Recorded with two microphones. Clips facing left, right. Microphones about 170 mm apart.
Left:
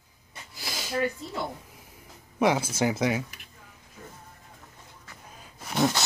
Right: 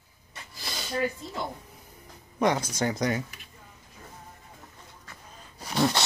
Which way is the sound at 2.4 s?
5° left (ahead or behind).